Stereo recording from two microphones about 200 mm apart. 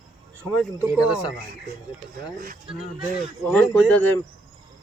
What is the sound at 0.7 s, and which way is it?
Speech, 15° right (ahead or behind).